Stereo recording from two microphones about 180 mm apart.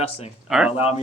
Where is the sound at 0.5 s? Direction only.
5° right (ahead or behind).